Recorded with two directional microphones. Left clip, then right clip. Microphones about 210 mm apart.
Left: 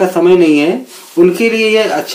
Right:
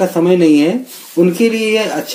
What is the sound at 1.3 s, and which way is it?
Speech, 40° right (ahead or behind).